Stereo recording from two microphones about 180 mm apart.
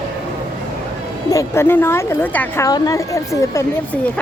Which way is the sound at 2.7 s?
20° left (ahead or behind).